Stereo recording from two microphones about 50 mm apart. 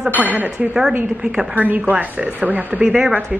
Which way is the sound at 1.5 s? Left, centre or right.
Right.